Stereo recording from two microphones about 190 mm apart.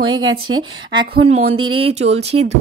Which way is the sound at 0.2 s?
90° right.